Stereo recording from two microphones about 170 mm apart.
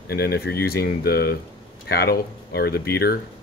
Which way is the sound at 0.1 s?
70° left (ahead or behind).